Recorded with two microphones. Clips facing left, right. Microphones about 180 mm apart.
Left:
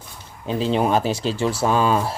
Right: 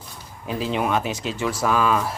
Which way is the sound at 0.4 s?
30° left (ahead or behind).